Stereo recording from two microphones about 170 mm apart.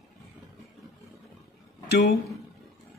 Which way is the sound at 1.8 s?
85° left.